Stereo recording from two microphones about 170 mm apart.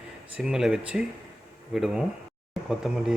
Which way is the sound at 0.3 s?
5° right (ahead or behind).